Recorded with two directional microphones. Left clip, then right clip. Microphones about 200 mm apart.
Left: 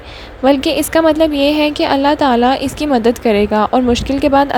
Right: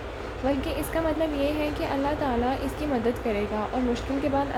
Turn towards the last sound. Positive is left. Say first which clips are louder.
# left 14 dB
turn(degrees=55)  # may be behind; listen again after turning